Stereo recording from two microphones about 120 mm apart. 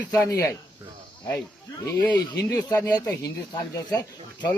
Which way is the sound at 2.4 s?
25° left (ahead or behind).